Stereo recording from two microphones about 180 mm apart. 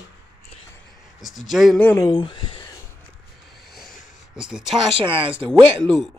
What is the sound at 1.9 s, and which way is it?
Speech, 20° left (ahead or behind).